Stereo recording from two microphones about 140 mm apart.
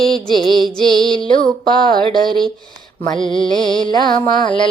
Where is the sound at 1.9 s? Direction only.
35° right (ahead or behind).